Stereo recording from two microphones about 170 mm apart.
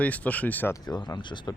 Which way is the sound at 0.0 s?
10° left (ahead or behind).